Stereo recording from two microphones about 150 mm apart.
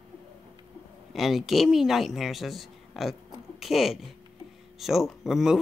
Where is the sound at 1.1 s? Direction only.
Centre (ahead or behind).